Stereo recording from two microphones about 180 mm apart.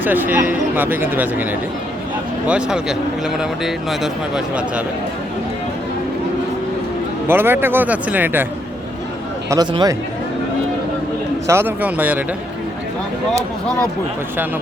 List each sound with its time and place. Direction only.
0.0 s speech: 10° right (ahead or behind)
2.5 s speech: 5° right (ahead or behind)
7.3 s speech: 10° right (ahead or behind)
9.5 s speech: 20° right (ahead or behind)
11.4 s speech: 15° right (ahead or behind)